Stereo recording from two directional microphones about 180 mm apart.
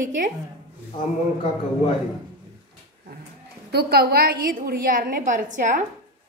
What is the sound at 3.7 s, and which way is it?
A woman's voice, 65° right (ahead or behind).